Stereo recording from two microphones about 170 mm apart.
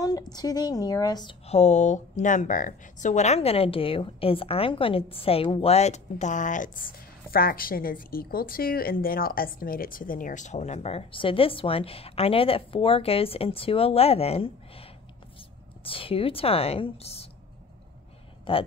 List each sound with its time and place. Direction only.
0.0 s a woman's voice: 20° left (ahead or behind)
1.5 s a woman's voice: 40° left (ahead or behind)
18.5 s a woman's voice: 30° left (ahead or behind)